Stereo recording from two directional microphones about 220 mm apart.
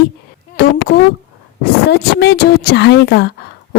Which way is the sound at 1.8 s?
50° left (ahead or behind).